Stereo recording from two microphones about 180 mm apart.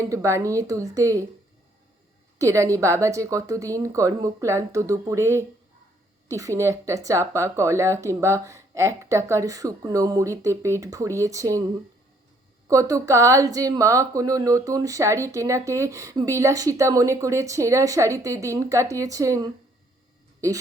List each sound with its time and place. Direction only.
0.0 s speech: 15° right (ahead or behind)
2.4 s speech: 15° right (ahead or behind)
6.2 s speech: 15° right (ahead or behind)
12.6 s speech: 15° right (ahead or behind)